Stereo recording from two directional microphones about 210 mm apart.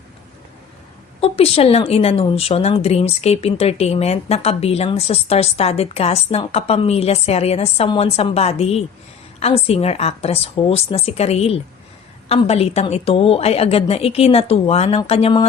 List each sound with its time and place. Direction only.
1.2 s a woman's voice: 30° left (ahead or behind)